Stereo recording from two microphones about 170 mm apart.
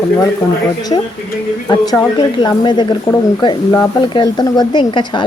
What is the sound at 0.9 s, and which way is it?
Speech, 30° left (ahead or behind).